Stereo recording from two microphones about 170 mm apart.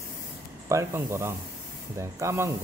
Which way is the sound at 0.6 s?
15° right (ahead or behind).